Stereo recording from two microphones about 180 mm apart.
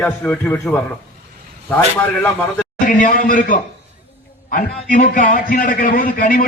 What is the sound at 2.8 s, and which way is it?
Speech, 45° left (ahead or behind).